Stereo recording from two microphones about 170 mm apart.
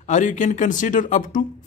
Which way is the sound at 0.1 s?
50° left (ahead or behind).